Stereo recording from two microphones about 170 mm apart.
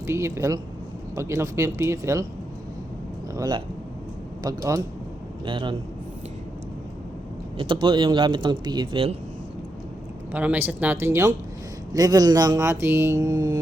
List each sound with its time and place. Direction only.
0.1 s speech: 15° right (ahead or behind)
3.3 s speech: 25° right (ahead or behind)
7.6 s speech: 30° right (ahead or behind)
10.3 s speech: 10° right (ahead or behind)